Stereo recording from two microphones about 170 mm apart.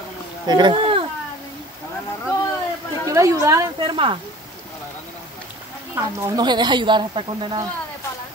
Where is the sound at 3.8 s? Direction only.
30° right (ahead or behind).